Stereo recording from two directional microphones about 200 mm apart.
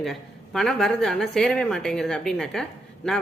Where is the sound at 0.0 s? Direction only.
Centre (ahead or behind).